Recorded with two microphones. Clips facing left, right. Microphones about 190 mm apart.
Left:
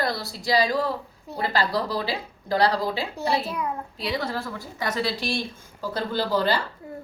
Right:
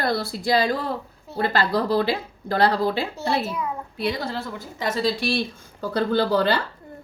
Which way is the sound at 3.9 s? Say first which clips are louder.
Right 5 dB; 55° right (ahead or behind).